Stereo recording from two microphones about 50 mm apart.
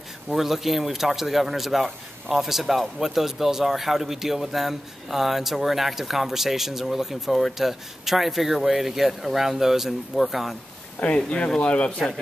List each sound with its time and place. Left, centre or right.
0.3 s speech: centre
11.0 s speech: left